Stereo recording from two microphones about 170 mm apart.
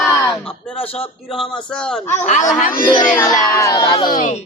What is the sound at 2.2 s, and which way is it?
Speech, 45° left (ahead or behind).